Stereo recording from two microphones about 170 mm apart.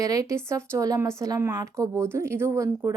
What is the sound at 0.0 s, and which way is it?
A woman's voice, 20° right (ahead or behind).